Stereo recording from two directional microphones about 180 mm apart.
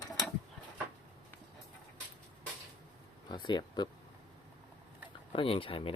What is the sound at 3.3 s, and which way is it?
Speech, 25° left (ahead or behind).